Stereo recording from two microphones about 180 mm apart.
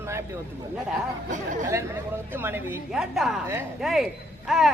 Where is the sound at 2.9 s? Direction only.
Centre (ahead or behind).